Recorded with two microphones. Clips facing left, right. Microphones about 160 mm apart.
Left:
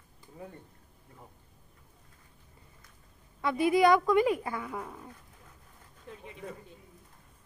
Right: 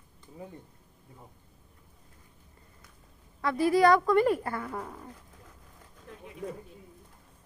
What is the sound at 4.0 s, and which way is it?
Speech, 5° left (ahead or behind).